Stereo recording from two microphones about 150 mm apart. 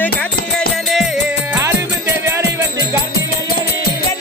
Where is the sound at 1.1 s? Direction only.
15° right (ahead or behind).